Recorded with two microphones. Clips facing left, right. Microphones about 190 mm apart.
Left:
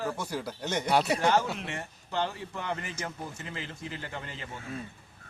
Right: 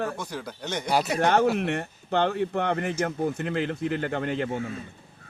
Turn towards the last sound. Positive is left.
turn(degrees=-60)  # may be behind; listen again after turning